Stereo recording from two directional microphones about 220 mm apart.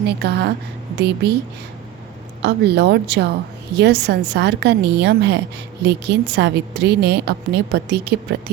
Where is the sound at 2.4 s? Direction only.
50° right (ahead or behind).